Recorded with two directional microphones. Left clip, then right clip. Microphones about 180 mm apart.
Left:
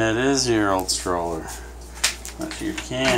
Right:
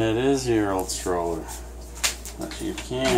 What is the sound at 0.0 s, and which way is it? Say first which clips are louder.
Speech: left 2 dB; 5° right (ahead or behind).